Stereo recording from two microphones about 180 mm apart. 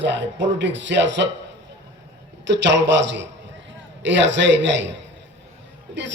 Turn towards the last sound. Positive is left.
turn(degrees=-80)